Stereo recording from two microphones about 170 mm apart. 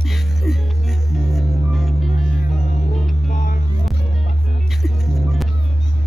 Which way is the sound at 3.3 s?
50° left (ahead or behind).